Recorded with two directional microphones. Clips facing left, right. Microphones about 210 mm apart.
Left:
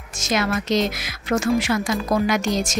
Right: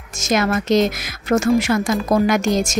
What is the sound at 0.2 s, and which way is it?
A woman's voice, 45° right (ahead or behind).